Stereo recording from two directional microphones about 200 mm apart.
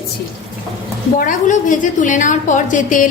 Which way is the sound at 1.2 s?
40° left (ahead or behind).